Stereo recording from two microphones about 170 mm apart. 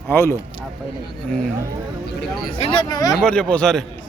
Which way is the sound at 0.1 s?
15° left (ahead or behind).